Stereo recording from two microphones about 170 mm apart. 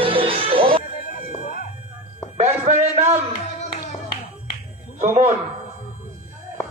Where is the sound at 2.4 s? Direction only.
40° right (ahead or behind).